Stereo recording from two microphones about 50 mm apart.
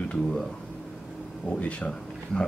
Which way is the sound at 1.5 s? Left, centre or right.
Left.